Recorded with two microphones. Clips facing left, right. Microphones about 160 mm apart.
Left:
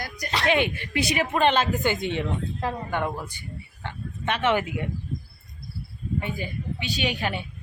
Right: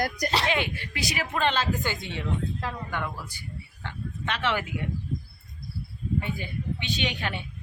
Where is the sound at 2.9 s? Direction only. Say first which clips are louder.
Left 5 dB; 50° left (ahead or behind).